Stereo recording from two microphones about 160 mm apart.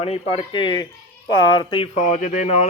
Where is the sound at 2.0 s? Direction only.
50° left (ahead or behind).